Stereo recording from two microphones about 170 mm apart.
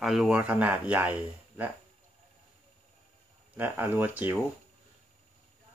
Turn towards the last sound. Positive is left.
turn(degrees=-10)  # may be behind; listen again after turning